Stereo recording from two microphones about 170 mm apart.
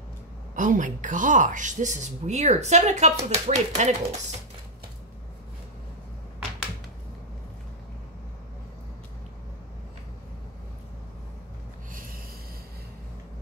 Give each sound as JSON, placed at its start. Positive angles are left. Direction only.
{"t": 0.6, "sound": "a woman's voice", "side_deg": -50}
{"t": 11.9, "sound": "snort", "side_deg": -55}